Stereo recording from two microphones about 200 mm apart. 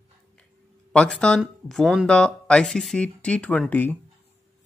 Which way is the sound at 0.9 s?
5° left (ahead or behind).